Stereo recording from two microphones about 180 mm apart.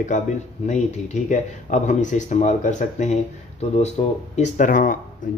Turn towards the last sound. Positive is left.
turn(degrees=45)  # may be behind; listen again after turning